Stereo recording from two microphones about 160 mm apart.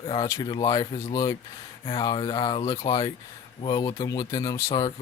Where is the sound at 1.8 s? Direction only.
35° left (ahead or behind).